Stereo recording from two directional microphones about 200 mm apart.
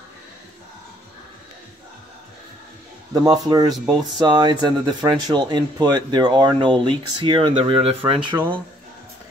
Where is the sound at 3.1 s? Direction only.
20° right (ahead or behind).